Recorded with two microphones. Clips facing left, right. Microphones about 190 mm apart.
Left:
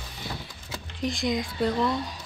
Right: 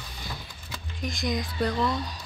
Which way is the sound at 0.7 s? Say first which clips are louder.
Left 5 dB; 30° left (ahead or behind).